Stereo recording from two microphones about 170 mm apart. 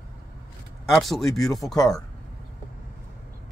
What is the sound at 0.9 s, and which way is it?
Speech, centre (ahead or behind).